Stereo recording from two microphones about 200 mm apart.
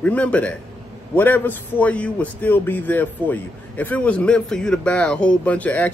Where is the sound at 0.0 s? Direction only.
5° left (ahead or behind).